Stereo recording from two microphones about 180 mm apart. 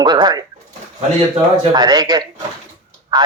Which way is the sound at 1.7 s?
25° right (ahead or behind).